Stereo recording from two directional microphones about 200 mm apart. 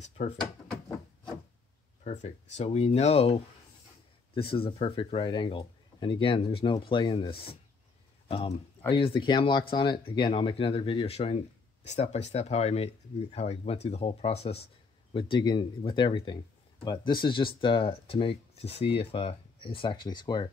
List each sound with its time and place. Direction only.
0.0 s speech: 30° left (ahead or behind)
2.0 s speech: 35° left (ahead or behind)